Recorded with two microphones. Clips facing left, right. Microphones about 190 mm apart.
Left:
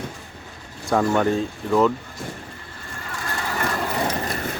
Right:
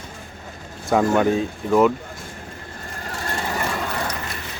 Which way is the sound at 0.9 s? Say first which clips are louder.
Right 2 dB; 5° right (ahead or behind).